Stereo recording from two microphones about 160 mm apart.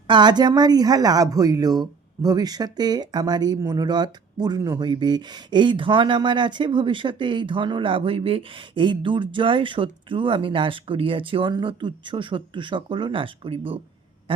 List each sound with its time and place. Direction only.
0.1 s speech: 25° right (ahead or behind)